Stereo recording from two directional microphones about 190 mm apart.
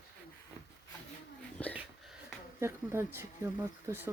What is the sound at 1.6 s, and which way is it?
Dog, 5° left (ahead or behind).